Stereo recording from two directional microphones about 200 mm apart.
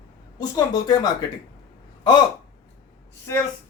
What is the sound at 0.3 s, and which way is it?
Speech, 20° left (ahead or behind).